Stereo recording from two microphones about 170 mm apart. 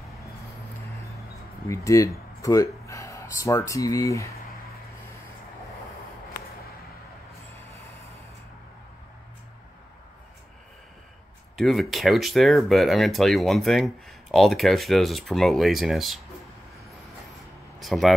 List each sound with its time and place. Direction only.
1.7 s speech: 20° left (ahead or behind)
11.5 s speech: centre (ahead or behind)
17.7 s speech: centre (ahead or behind)